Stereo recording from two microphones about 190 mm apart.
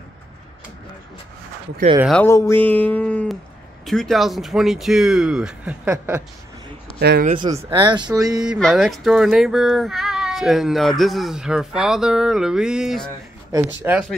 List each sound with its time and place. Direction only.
2.2 s speech: 15° left (ahead or behind); by 6.2 s 5° right (ahead or behind)
7.0 s speech: 60° right (ahead or behind)
7.2 s speech: 25° right (ahead or behind)
8.5 s speech: centre (ahead or behind)
13.5 s speech: 10° right (ahead or behind)